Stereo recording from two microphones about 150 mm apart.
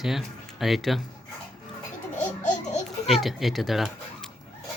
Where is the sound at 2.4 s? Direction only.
55° left (ahead or behind).